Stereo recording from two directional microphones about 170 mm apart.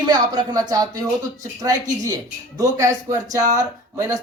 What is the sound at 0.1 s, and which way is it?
Speech, 20° right (ahead or behind).